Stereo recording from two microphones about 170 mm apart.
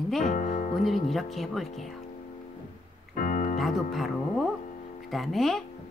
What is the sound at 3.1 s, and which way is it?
Music, 50° left (ahead or behind).